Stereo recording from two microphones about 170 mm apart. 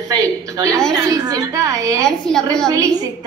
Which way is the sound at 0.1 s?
20° right (ahead or behind).